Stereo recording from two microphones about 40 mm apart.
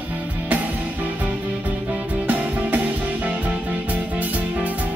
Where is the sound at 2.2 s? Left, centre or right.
Right.